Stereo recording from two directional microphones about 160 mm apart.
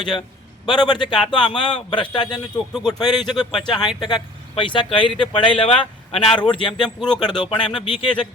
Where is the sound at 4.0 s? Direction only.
25° left (ahead or behind).